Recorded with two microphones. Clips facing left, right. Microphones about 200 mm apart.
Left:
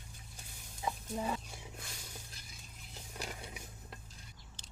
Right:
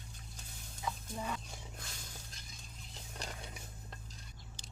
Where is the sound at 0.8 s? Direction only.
30° left (ahead or behind).